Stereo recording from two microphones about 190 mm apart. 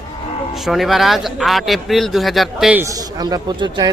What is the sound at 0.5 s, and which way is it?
Speech, centre (ahead or behind).